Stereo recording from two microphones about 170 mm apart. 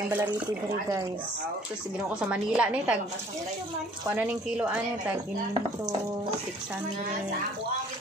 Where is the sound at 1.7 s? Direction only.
5° right (ahead or behind).